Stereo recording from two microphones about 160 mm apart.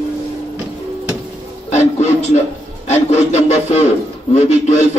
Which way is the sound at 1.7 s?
45° left (ahead or behind).